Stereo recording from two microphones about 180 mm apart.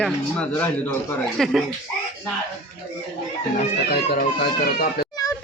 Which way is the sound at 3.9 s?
60° left (ahead or behind).